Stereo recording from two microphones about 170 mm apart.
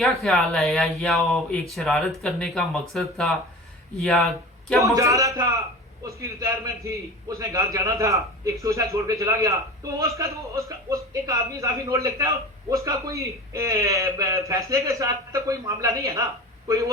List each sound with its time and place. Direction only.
0.2 s speech: centre (ahead or behind)
4.8 s a man's voice: 20° right (ahead or behind)